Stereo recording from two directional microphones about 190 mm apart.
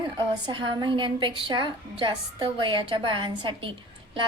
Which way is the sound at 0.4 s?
25° right (ahead or behind).